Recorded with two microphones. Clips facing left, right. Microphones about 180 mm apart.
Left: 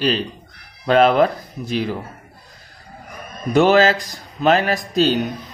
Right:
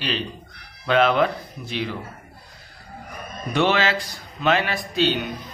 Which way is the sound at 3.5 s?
40° left (ahead or behind).